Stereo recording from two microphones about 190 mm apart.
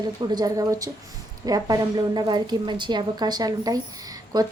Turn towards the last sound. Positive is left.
turn(degrees=-20)  # may be behind; listen again after turning